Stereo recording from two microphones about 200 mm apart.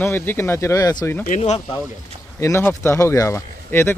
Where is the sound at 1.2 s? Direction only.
35° left (ahead or behind).